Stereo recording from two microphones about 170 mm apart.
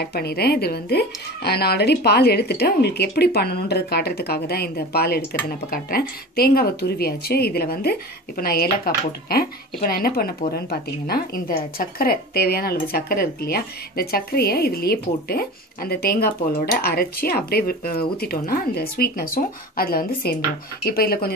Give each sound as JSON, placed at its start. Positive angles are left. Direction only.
{"t": 0.0, "sound": "a woman's voice", "side_deg": 70}